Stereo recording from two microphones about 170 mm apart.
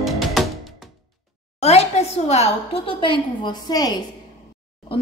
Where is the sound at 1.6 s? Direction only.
40° left (ahead or behind); by 4.0 s 25° left (ahead or behind).